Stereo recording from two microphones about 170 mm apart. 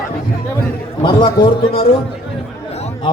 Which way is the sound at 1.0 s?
25° left (ahead or behind).